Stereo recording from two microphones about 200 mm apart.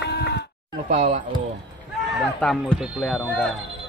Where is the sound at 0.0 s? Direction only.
55° left (ahead or behind).